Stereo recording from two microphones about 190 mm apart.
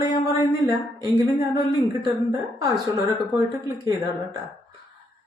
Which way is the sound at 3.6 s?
20° right (ahead or behind).